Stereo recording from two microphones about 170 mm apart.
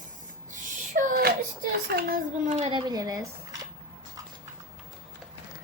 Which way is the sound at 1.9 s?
65° right (ahead or behind).